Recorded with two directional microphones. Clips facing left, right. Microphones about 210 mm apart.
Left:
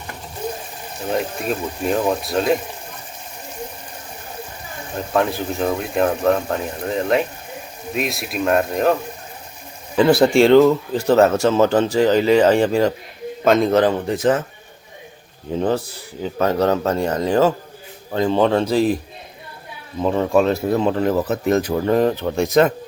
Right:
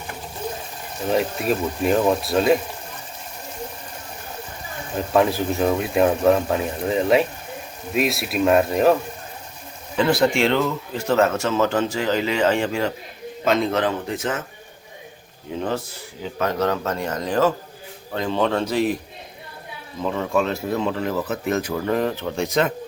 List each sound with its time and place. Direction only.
1.0 s speech: centre (ahead or behind)
4.9 s speech: centre (ahead or behind)
10.1 s speech: 35° left (ahead or behind)
13.4 s speech: 45° left (ahead or behind)
16.4 s speech: 35° left (ahead or behind)
20.1 s speech: 35° left (ahead or behind)